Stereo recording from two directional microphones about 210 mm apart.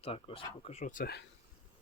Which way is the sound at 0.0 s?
25° left (ahead or behind).